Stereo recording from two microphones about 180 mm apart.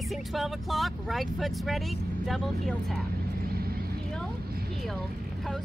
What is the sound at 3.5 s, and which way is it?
Vehicle, 55° right (ahead or behind).